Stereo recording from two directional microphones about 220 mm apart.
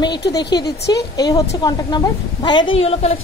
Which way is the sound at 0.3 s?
20° left (ahead or behind).